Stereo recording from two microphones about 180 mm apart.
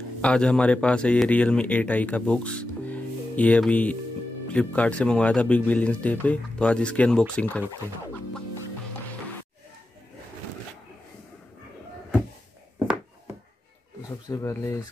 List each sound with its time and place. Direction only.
0.2 s speech: 5° left (ahead or behind)
14.0 s speech: 20° left (ahead or behind)